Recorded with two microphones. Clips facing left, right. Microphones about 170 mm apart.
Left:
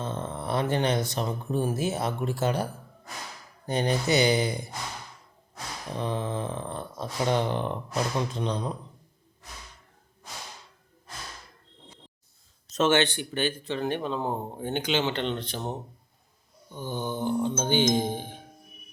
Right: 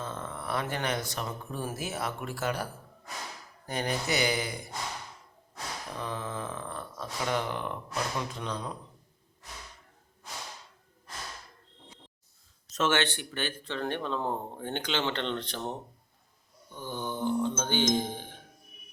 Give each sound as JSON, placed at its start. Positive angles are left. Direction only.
{"t": 0.0, "sound": "speech", "side_deg": 20}
{"t": 3.7, "sound": "speech", "side_deg": 25}
{"t": 5.9, "sound": "speech", "side_deg": 25}
{"t": 12.7, "sound": "speech", "side_deg": 20}